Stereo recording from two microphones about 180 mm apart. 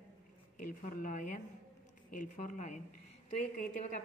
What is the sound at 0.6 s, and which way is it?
A woman's voice, 50° left (ahead or behind).